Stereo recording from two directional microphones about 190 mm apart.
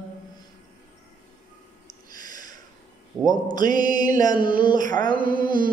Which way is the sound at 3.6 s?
45° right (ahead or behind).